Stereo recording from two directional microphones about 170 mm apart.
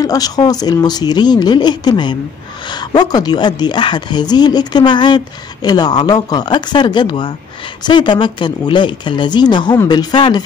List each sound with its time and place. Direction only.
0.0 s a woman's voice: 20° left (ahead or behind)